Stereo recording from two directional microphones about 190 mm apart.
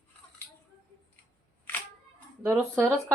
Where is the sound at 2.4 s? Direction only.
10° right (ahead or behind).